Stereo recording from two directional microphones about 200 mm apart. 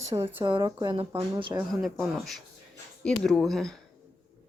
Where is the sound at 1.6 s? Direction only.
Centre (ahead or behind).